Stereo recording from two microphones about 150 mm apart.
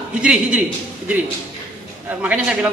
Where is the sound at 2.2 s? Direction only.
10° right (ahead or behind).